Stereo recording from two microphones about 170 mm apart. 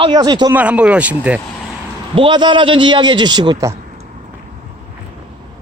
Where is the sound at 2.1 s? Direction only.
30° right (ahead or behind).